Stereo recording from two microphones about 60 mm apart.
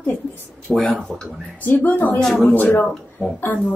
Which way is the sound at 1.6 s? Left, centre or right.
Left.